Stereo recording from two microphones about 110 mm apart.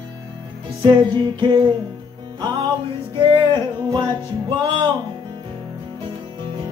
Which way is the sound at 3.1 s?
45° right (ahead or behind).